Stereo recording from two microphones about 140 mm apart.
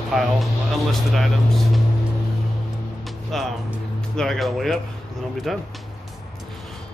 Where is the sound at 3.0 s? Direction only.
Centre (ahead or behind).